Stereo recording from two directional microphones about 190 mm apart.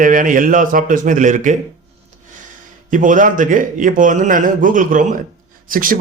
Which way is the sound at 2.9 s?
45° right (ahead or behind).